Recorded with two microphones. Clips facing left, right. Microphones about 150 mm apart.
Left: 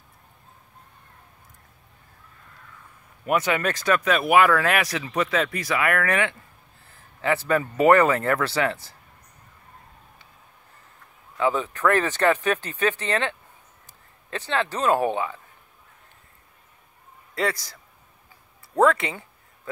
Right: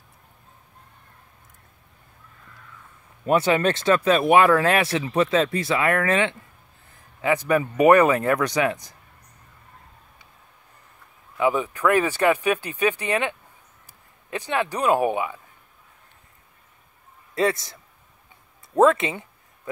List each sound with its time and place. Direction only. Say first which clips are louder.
3.3 s speech: right 4 dB; 30° right (ahead or behind)
11.3 s speech: right 2 dB; 15° right (ahead or behind)
17.4 s speech: right 4 dB; 25° right (ahead or behind)
18.8 s a sound: right 2 dB; 20° right (ahead or behind)